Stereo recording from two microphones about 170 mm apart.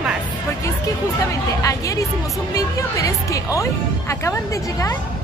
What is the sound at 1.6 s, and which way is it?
Speech, 20° left (ahead or behind).